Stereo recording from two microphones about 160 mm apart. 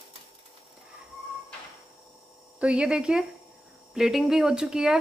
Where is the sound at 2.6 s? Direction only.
5° right (ahead or behind).